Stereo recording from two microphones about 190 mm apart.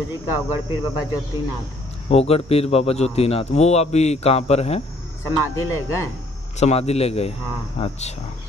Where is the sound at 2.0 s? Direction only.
30° left (ahead or behind).